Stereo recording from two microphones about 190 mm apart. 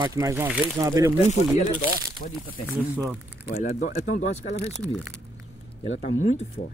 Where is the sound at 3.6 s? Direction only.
40° left (ahead or behind).